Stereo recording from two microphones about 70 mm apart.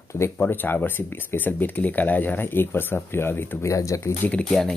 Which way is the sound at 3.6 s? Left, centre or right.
Left.